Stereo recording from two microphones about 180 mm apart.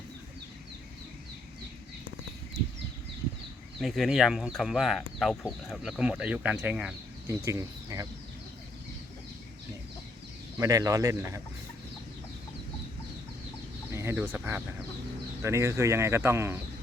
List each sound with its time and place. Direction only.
3.8 s speech: centre (ahead or behind); by 8.0 s 15° right (ahead or behind)
10.6 s speech: 20° right (ahead or behind)
13.9 s chicken: 15° right (ahead or behind)
15.4 s speech: 15° right (ahead or behind)